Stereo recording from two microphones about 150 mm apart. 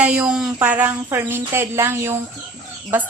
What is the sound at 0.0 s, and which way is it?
Speech, 5° right (ahead or behind).